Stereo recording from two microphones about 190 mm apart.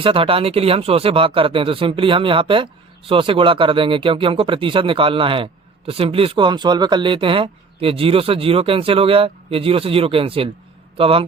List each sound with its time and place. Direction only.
0.0 s speech: 30° right (ahead or behind)